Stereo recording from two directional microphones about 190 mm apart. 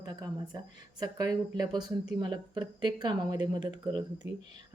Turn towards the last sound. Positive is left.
turn(degrees=-25)  # may be behind; listen again after turning